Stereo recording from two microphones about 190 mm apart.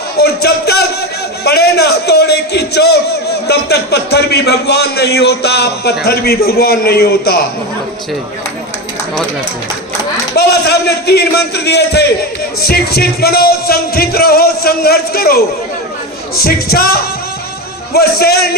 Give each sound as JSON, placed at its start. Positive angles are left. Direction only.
{"t": 0.2, "sound": "a sound", "side_deg": 55}
{"t": 1.5, "sound": "a man's voice", "side_deg": 60}
{"t": 10.3, "sound": "a man's voice", "side_deg": 55}
{"t": 12.6, "sound": "music", "side_deg": 55}
{"t": 16.4, "sound": "music", "side_deg": 55}
{"t": 17.9, "sound": "a man's voice", "side_deg": 55}